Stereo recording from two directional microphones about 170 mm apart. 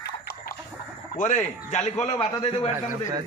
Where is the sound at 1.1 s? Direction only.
50° left (ahead or behind).